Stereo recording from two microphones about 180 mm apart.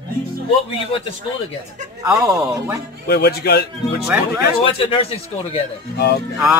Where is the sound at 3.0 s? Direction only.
65° left (ahead or behind).